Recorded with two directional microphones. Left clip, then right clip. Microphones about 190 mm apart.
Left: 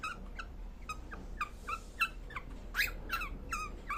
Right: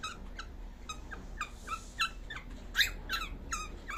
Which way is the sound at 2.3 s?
20° left (ahead or behind).